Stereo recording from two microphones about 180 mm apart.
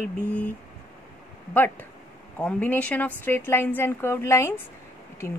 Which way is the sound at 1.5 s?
10° left (ahead or behind).